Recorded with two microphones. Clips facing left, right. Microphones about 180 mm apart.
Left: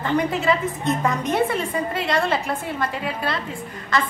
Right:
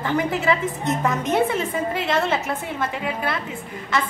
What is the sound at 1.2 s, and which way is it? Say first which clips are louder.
Speech: right 1 dB; 20° right (ahead or behind).